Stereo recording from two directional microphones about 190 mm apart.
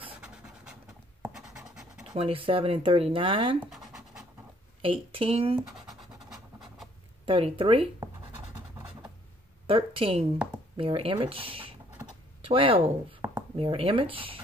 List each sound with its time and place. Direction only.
0.2 s a sound: 5° right (ahead or behind)
2.1 s speech: 30° right (ahead or behind)
4.8 s speech: 30° right (ahead or behind)
7.2 s scratch: 30° right (ahead or behind)
9.7 s speech: 30° right (ahead or behind)
13.2 s a sound: 15° right (ahead or behind)
13.6 s speech: 30° right (ahead or behind)